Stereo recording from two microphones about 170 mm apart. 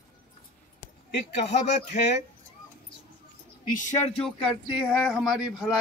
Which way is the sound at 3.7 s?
45° left (ahead or behind).